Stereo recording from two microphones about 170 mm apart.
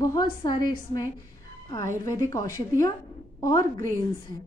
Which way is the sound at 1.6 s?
20° left (ahead or behind).